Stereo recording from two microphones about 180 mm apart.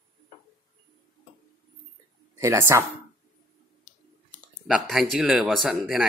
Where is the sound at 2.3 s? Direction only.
15° right (ahead or behind).